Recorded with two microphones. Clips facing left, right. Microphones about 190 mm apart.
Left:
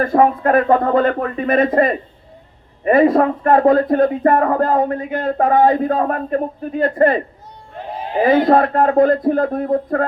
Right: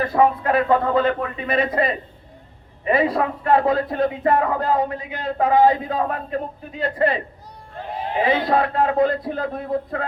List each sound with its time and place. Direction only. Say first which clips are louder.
0.0 s speech: left 4 dB; 50° left (ahead or behind)
8.2 s speech: left 7 dB; 50° left (ahead or behind)